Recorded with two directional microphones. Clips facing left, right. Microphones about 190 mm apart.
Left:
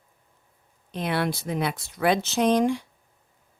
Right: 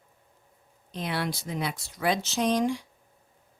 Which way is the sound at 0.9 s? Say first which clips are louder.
Left 5 dB; 60° left (ahead or behind).